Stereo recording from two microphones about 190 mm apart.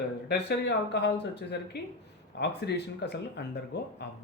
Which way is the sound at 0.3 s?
60° left (ahead or behind).